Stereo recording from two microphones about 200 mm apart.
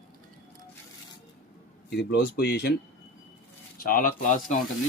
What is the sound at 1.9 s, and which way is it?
Speech, 55° left (ahead or behind).